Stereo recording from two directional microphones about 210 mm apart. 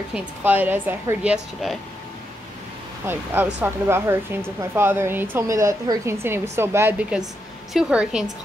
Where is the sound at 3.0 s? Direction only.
10° right (ahead or behind).